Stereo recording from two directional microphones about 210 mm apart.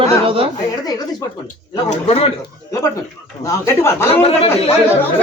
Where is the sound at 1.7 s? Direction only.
30° left (ahead or behind).